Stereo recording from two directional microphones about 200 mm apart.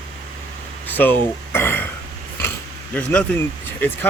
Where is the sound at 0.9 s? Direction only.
10° left (ahead or behind).